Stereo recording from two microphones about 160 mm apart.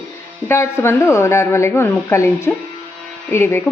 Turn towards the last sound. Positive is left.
turn(degrees=15)  # may be behind; listen again after turning